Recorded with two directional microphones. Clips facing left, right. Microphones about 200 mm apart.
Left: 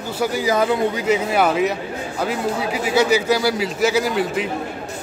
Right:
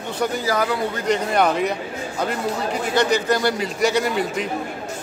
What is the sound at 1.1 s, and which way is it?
A man's voice, 5° left (ahead or behind).